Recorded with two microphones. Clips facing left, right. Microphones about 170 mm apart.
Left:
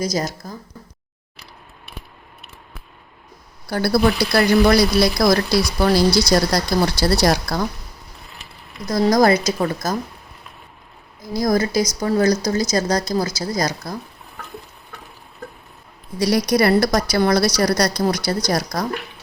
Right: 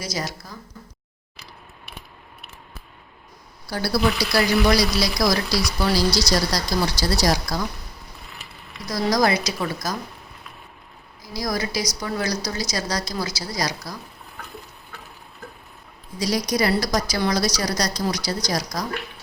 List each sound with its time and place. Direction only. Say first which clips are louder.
0.0 s speech: left 7 dB; 45° left (ahead or behind)
3.7 s a woman's voice: left 5 dB; 55° left (ahead or behind)
8.9 s speech: left 6 dB; 50° left (ahead or behind)
11.2 s speech: left 8 dB; 50° left (ahead or behind)
16.1 s a woman's voice: left 6 dB; 60° left (ahead or behind)